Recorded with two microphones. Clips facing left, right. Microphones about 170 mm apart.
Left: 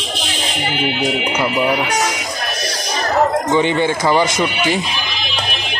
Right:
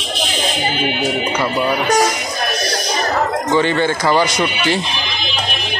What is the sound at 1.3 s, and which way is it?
Speech, 15° left (ahead or behind).